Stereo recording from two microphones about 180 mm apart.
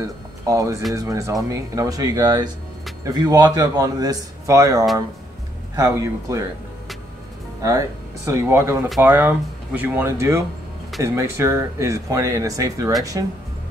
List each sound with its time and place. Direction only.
0.0 s speech: 20° right (ahead or behind)
8.3 s speech: 15° right (ahead or behind)